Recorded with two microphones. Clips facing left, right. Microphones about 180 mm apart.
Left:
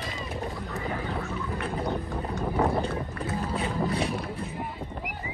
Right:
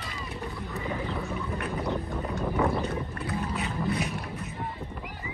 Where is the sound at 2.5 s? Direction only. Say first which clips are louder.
Left 2 dB; 30° left (ahead or behind).